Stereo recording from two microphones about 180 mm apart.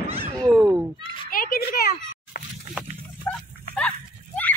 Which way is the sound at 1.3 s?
50° left (ahead or behind).